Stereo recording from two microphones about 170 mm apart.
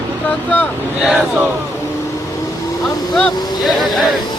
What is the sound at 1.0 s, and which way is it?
Speech, 5° right (ahead or behind).